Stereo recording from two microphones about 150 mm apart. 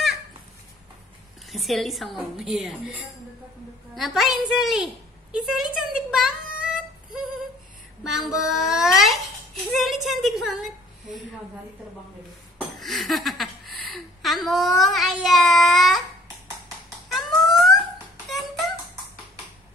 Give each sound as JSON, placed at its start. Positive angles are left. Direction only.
{"t": 1.5, "sound": "a woman's voice", "side_deg": 0}
{"t": 6.1, "sound": "child singing", "side_deg": -5}
{"t": 8.0, "sound": "a child's voice", "side_deg": 0}
{"t": 12.5, "sound": "speech", "side_deg": 0}
{"t": 17.1, "sound": "a sound", "side_deg": 0}